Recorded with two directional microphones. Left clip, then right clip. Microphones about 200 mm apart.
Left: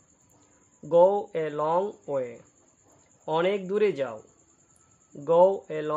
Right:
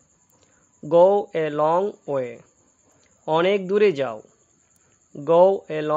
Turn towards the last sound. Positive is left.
turn(degrees=-35)  # may be behind; listen again after turning